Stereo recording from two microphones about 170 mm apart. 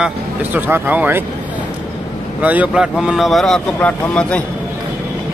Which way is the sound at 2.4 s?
10° right (ahead or behind).